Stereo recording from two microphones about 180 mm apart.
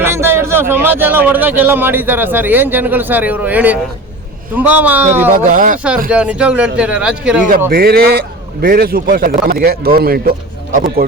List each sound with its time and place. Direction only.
0.0 s a man's voice: 15° right (ahead or behind)
5.3 s speech: 50° right (ahead or behind)
6.1 s a man's voice: 5° right (ahead or behind)
7.7 s speech: 55° right (ahead or behind)